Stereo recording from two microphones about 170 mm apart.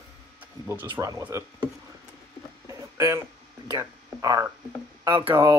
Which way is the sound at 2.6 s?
20° right (ahead or behind).